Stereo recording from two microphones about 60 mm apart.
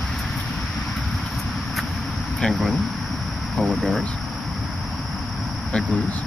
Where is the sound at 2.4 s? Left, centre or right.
Centre.